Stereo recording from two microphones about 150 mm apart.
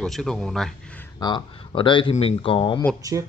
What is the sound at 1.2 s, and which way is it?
Speech, 30° left (ahead or behind).